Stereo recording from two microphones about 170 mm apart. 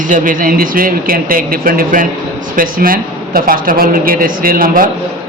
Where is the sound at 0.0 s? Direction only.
50° right (ahead or behind).